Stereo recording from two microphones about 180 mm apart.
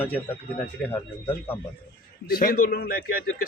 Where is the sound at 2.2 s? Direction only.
55° left (ahead or behind).